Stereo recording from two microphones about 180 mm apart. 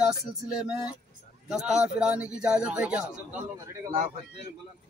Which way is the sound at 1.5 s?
5° right (ahead or behind).